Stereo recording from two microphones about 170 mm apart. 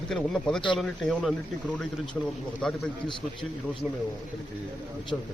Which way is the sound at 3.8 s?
5° right (ahead or behind).